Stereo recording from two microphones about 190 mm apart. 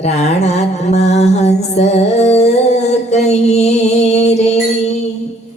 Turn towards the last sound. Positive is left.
turn(degrees=35)  # may be behind; listen again after turning